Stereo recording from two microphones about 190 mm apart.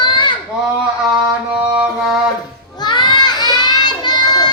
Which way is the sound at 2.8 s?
25° left (ahead or behind).